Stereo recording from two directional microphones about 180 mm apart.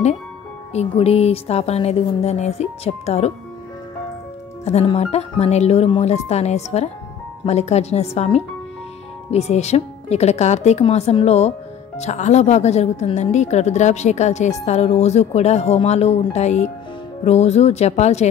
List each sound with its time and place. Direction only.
0.7 s music: 35° left (ahead or behind)
4.6 s music: 35° left (ahead or behind)